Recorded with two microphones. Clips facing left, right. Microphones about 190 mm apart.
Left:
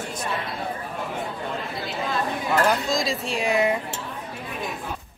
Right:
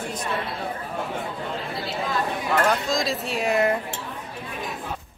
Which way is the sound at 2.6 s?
Centre (ahead or behind).